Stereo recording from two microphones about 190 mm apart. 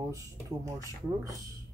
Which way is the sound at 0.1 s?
15° right (ahead or behind).